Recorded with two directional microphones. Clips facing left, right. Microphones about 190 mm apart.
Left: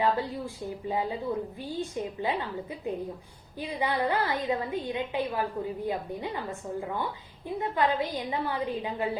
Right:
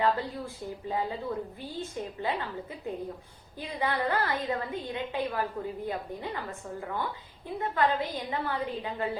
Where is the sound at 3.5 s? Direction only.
15° left (ahead or behind).